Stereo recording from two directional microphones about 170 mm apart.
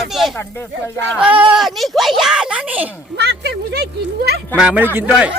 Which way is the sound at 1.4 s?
5° right (ahead or behind).